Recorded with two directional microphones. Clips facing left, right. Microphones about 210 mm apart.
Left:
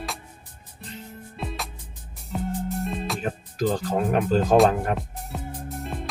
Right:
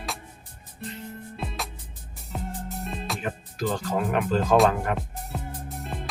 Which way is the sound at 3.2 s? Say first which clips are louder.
Left 4 dB; 40° left (ahead or behind).